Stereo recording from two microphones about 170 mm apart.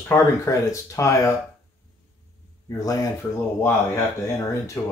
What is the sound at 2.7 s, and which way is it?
Speech, 20° left (ahead or behind).